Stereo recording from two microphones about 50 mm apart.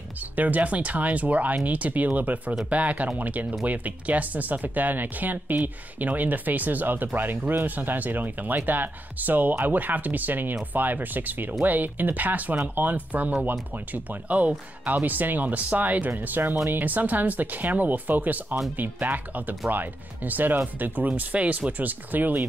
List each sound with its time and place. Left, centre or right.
0.4 s speech: right